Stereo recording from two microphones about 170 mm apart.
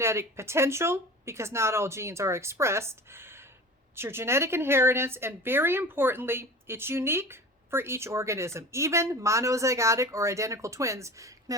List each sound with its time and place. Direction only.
0.0 s a woman's voice: 15° right (ahead or behind)